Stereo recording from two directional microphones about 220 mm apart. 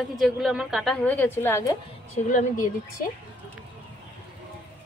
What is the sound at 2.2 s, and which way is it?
Speech, 35° left (ahead or behind).